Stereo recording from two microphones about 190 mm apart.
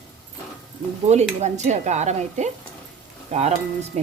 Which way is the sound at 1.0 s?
35° right (ahead or behind).